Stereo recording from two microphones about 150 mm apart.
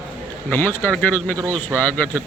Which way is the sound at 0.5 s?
15° left (ahead or behind).